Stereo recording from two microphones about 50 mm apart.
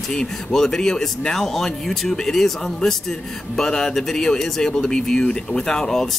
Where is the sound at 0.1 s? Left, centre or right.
Centre.